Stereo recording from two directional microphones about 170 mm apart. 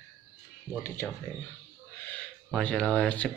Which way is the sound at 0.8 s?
15° left (ahead or behind).